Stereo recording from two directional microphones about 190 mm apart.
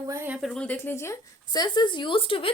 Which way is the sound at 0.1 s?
10° right (ahead or behind).